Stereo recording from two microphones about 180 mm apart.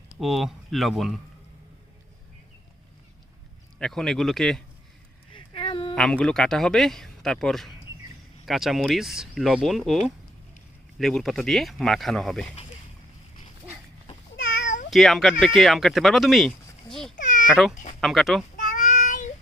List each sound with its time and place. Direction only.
0.2 s speech: centre (ahead or behind)
3.8 s speech: 5° left (ahead or behind)
5.3 s a sound: 30° left (ahead or behind)
5.9 s speech: 5° left (ahead or behind)
14.8 s speech: centre (ahead or behind)
17.5 s speech: centre (ahead or behind)
18.5 s child singing: 50° left (ahead or behind)